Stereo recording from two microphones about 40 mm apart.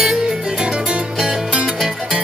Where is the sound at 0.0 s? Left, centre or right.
Centre.